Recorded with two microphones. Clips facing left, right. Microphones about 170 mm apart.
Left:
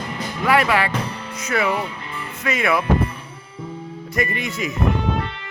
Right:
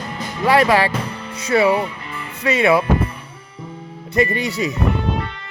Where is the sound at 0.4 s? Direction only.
35° right (ahead or behind).